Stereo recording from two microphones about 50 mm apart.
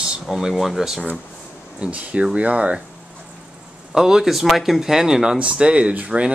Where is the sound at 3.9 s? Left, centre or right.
Centre.